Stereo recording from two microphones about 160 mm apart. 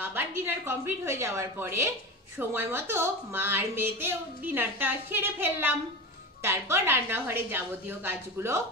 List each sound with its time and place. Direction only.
0.0 s a woman's voice: 15° right (ahead or behind)